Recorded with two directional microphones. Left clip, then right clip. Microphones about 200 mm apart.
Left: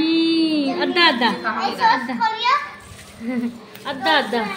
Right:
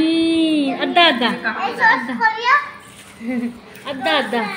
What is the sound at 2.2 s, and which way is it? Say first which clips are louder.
Children playing: right 5 dB; 25° right (ahead or behind).